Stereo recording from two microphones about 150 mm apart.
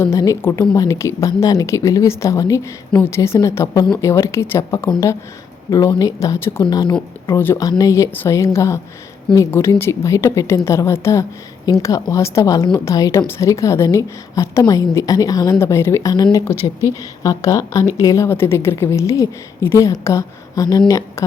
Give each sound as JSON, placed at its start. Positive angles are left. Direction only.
{"t": 0.0, "sound": "a woman's voice", "side_deg": 20}
{"t": 6.7, "sound": "a woman's voice", "side_deg": 30}
{"t": 7.3, "sound": "a woman's voice", "side_deg": 15}